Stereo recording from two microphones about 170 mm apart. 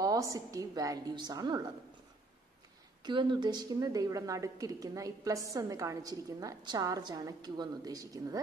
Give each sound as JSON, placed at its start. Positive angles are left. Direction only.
{"t": 0.0, "sound": "a woman's voice", "side_deg": -20}
{"t": 3.0, "sound": "a woman's voice", "side_deg": -25}